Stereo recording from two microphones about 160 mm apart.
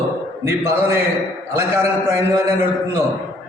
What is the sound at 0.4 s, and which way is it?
Speech, 15° right (ahead or behind).